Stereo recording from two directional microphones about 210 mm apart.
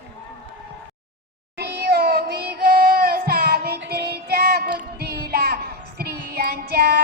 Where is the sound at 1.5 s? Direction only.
50° right (ahead or behind).